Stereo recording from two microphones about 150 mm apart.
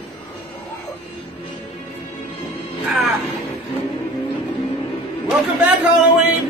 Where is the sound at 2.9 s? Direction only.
Centre (ahead or behind).